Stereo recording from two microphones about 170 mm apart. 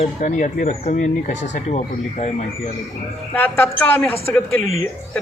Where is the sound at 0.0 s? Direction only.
45° left (ahead or behind).